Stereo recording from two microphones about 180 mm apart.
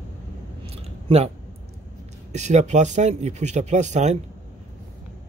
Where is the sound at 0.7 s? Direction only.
35° right (ahead or behind).